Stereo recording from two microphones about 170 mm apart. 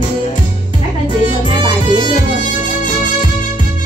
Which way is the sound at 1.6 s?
25° right (ahead or behind).